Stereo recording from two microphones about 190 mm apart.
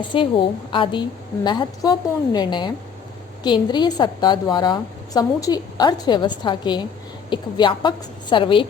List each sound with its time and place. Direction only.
0.1 s a woman's voice: 25° left (ahead or behind)